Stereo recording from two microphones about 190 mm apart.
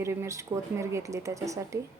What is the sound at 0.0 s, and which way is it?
A woman's voice, 15° right (ahead or behind).